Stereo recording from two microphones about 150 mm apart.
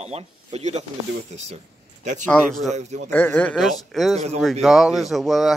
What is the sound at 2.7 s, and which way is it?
Speech, 50° right (ahead or behind).